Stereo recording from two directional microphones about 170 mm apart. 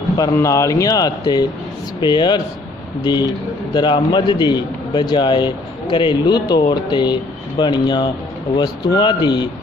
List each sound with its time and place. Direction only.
0.2 s a man's voice: 20° left (ahead or behind)